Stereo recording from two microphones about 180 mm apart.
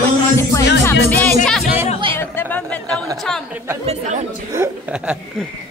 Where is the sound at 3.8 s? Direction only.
40° right (ahead or behind).